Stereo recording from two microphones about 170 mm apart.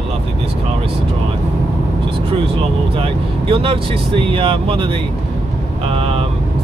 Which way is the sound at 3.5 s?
30° right (ahead or behind).